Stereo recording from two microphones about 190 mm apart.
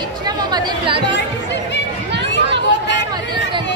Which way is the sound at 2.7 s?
65° left (ahead or behind).